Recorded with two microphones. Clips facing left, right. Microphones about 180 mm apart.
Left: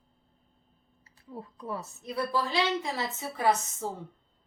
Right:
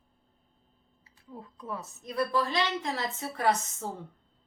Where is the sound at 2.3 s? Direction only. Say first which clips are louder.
Left 3 dB; 5° left (ahead or behind).